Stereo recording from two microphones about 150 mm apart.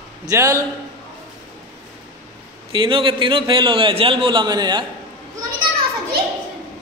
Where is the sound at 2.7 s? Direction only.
35° right (ahead or behind).